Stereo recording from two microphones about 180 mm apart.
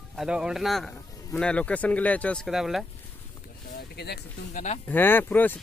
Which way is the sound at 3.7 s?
65° left (ahead or behind).